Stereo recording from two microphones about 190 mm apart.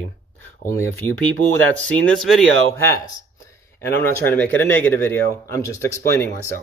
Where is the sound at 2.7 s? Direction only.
15° left (ahead or behind).